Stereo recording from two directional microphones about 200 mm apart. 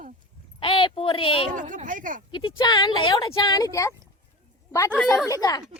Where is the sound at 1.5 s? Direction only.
40° right (ahead or behind).